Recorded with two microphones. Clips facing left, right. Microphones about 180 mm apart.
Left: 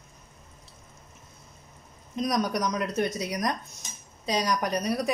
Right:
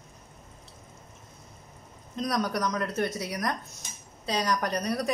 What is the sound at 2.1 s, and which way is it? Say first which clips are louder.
A woman's voice: left 2 dB; 15° left (ahead or behind).